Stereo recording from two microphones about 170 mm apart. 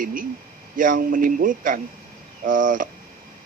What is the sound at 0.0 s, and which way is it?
A man's voice, 55° right (ahead or behind).